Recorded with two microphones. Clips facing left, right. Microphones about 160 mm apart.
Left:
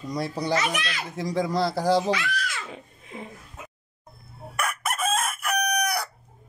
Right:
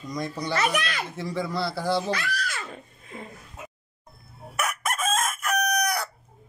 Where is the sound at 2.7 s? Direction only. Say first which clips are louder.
Left 1 dB; 10° left (ahead or behind).